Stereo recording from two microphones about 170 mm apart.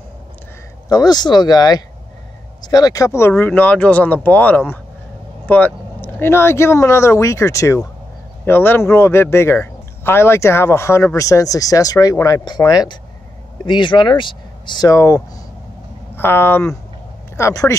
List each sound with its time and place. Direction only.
0.8 s speech: 20° left (ahead or behind)